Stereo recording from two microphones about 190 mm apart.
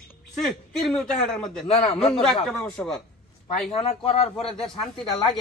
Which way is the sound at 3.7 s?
30° left (ahead or behind).